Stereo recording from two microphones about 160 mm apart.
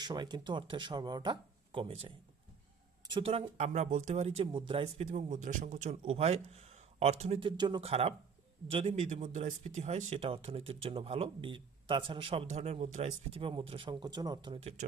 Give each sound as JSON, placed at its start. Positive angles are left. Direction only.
{"t": 0.0, "sound": "speech", "side_deg": -25}
{"t": 3.7, "sound": "speech", "side_deg": -50}
{"t": 5.0, "sound": "speech", "side_deg": -50}